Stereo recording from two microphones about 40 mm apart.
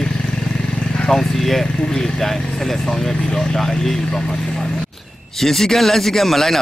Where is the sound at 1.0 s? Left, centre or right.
Centre.